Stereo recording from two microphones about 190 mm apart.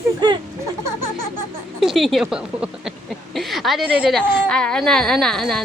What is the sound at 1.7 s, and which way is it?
A woman's voice, centre (ahead or behind).